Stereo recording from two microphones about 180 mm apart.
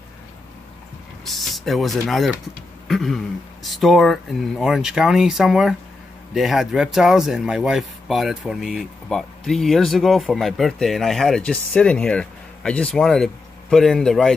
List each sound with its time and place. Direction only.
1.2 s speech: centre (ahead or behind)